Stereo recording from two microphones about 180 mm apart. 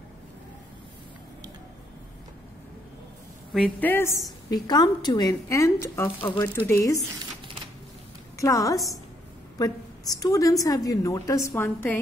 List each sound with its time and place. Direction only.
3.5 s a woman's voice: 5° left (ahead or behind)
4.5 s a woman's voice: 20° left (ahead or behind)
8.4 s a woman's voice: 20° left (ahead or behind)